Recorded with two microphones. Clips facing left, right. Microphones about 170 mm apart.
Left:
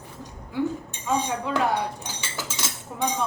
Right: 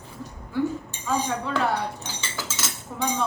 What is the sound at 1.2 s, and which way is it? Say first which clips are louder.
Cutlery: left 1 dB; 15° left (ahead or behind).